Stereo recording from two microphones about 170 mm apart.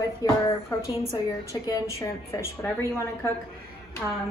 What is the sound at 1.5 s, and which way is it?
A woman's voice, 20° left (ahead or behind).